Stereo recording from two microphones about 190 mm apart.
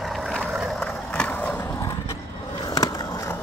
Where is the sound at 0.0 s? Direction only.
Centre (ahead or behind); by 3.3 s 20° left (ahead or behind).